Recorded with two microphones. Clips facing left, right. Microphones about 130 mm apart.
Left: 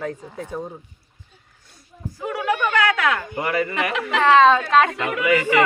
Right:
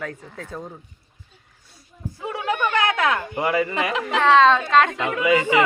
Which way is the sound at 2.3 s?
25° right (ahead or behind).